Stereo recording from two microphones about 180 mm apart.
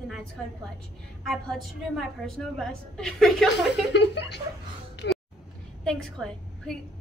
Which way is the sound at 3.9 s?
75° left (ahead or behind).